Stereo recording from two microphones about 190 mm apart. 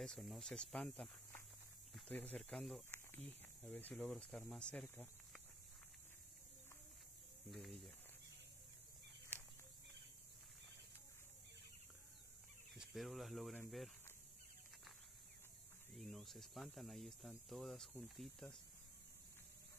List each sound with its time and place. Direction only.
0.0 s speech: centre (ahead or behind)
7.5 s speech: centre (ahead or behind)
12.9 s speech: centre (ahead or behind)
16.0 s speech: centre (ahead or behind)